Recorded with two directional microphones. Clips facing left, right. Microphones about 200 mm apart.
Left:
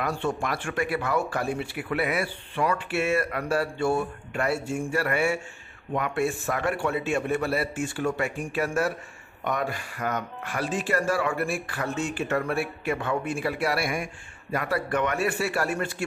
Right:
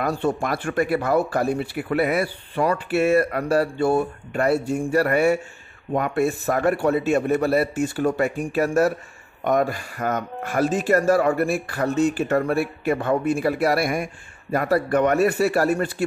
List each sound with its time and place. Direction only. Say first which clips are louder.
0.0 s speech: right 5 dB; 40° right (ahead or behind)